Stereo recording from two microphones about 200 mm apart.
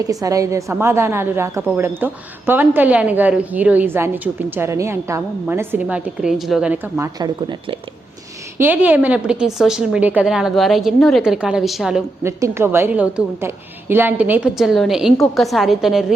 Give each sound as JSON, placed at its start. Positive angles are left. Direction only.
{"t": 0.0, "sound": "a woman's voice", "side_deg": -15}
{"t": 7.2, "sound": "speech", "side_deg": -20}
{"t": 8.5, "sound": "a woman's voice", "side_deg": -10}
{"t": 12.2, "sound": "a woman's voice", "side_deg": -15}